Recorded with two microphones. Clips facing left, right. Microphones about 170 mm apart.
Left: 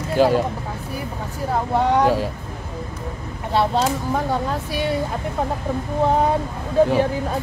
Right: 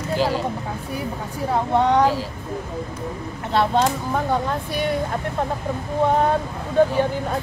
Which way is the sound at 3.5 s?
5° left (ahead or behind).